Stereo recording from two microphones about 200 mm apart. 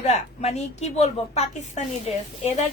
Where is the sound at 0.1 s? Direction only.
35° left (ahead or behind).